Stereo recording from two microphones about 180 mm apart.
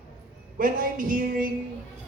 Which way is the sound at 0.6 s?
50° right (ahead or behind).